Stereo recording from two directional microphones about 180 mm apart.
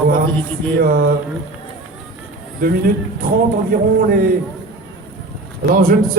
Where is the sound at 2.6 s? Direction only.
55° right (ahead or behind).